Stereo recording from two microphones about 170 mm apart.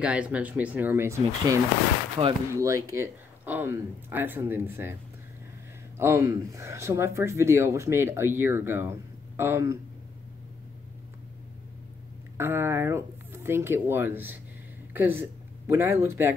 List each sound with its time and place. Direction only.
0.0 s speech: 5° right (ahead or behind)
2.2 s speech: 30° right (ahead or behind)
2.5 s speech: 20° right (ahead or behind)
5.9 s speech: 15° right (ahead or behind)
12.4 s speech: 15° right (ahead or behind)